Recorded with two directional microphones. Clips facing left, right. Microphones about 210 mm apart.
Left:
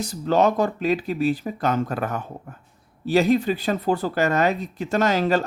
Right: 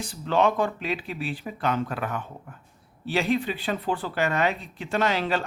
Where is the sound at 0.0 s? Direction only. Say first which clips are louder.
Left 4 dB; 40° left (ahead or behind).